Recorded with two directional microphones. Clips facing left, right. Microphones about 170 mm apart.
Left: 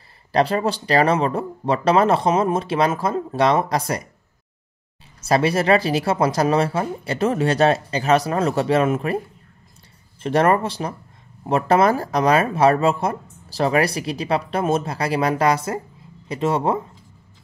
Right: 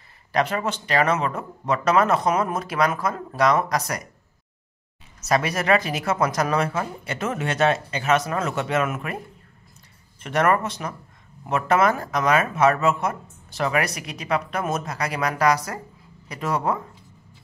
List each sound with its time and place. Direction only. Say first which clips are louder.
0.3 s speech: left 4 dB; 30° left (ahead or behind)
5.2 s speech: left 5 dB; 30° left (ahead or behind)
10.2 s speech: left 3 dB; 30° left (ahead or behind)